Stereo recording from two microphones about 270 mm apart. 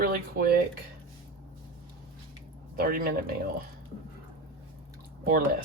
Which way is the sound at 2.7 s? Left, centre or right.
Right.